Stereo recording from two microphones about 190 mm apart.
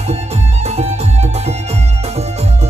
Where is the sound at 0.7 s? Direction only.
35° right (ahead or behind).